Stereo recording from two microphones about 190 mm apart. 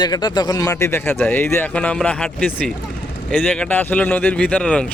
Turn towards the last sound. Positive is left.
turn(degrees=5)  # may be behind; listen again after turning